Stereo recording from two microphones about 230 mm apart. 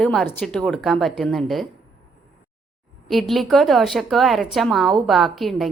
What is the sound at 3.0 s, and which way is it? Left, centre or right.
A woman's voice, centre.